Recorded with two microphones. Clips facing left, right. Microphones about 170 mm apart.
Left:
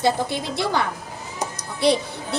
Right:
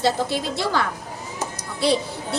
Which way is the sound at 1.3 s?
20° left (ahead or behind).